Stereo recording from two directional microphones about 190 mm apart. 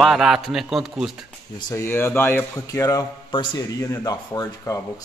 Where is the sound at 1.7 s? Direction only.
15° left (ahead or behind).